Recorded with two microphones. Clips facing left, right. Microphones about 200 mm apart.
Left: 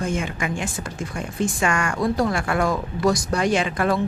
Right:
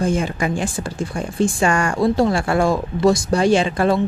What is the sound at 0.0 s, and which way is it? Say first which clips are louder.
A woman's voice: right 5 dB; 35° right (ahead or behind).